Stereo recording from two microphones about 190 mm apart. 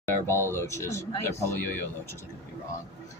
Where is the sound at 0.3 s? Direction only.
15° left (ahead or behind).